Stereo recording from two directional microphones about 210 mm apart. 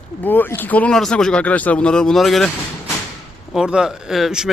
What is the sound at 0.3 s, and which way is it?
A man's voice, 10° left (ahead or behind).